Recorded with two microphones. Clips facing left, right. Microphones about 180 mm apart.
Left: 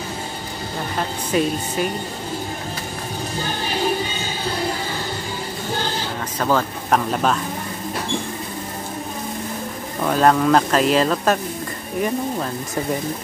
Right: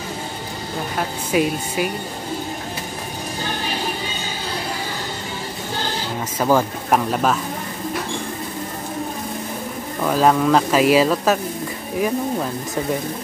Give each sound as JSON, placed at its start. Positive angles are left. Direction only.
{"t": 0.9, "sound": "speech", "side_deg": -10}
{"t": 6.4, "sound": "speech", "side_deg": -10}
{"t": 10.0, "sound": "speech", "side_deg": -5}